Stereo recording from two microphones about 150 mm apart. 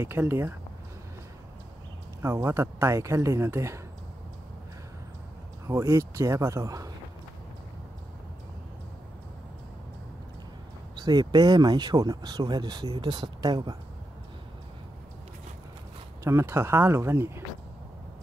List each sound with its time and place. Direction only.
0.0 s speech: 15° right (ahead or behind)
2.2 s speech: 20° right (ahead or behind)
5.7 s speech: 20° right (ahead or behind)
11.0 s speech: 30° right (ahead or behind)
16.3 s speech: 20° right (ahead or behind)